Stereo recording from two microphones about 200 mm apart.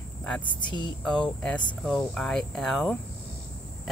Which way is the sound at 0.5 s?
25° left (ahead or behind).